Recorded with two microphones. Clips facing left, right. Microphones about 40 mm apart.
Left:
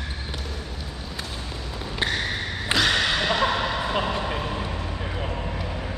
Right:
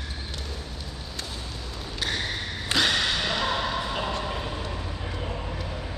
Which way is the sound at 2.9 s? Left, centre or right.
Left.